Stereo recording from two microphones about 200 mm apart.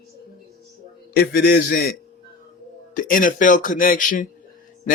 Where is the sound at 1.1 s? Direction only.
50° left (ahead or behind).